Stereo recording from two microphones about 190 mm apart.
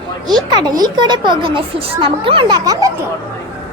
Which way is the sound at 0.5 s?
20° right (ahead or behind).